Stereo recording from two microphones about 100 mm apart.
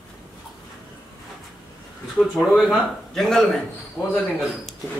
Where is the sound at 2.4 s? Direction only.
Centre (ahead or behind).